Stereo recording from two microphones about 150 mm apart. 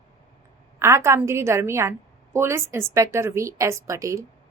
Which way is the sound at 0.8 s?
20° right (ahead or behind).